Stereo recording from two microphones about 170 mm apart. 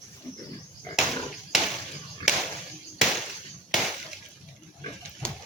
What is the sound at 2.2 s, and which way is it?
Chop, 5° right (ahead or behind).